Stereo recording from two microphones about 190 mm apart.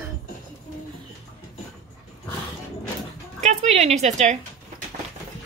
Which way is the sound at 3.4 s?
35° right (ahead or behind).